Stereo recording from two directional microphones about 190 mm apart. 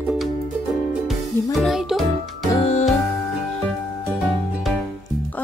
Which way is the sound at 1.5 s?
Centre (ahead or behind).